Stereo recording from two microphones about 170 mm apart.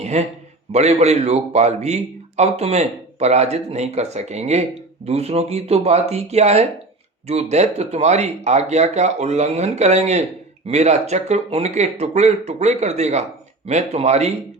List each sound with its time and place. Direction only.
0.0 s a man's voice: 40° right (ahead or behind)